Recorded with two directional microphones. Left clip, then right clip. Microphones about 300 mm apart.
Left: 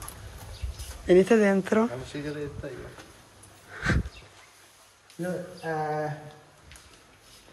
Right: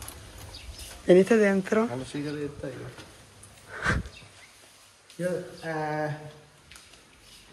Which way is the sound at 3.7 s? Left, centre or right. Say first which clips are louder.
Right 1 dB; centre.